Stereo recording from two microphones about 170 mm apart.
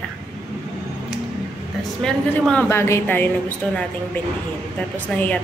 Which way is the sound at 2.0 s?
5° left (ahead or behind).